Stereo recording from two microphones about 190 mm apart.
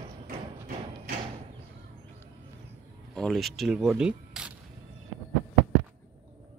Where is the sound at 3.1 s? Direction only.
Centre (ahead or behind).